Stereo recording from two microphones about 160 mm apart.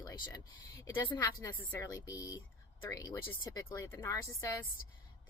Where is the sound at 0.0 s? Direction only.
20° left (ahead or behind).